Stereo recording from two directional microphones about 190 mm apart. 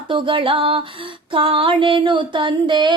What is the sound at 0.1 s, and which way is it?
Music, 25° right (ahead or behind).